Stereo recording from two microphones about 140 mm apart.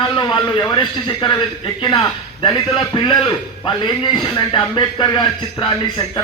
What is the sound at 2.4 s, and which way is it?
A man's voice, 35° left (ahead or behind).